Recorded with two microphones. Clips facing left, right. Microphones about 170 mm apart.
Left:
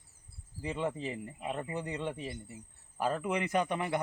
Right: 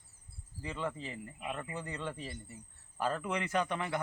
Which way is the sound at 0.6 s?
20° left (ahead or behind).